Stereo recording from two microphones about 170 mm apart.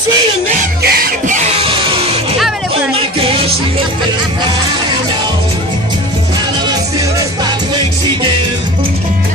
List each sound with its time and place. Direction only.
0.8 s music: 55° right (ahead or behind); by 2.0 s 30° right (ahead or behind)
3.2 s music: 35° right (ahead or behind)
6.7 s music: 20° right (ahead or behind)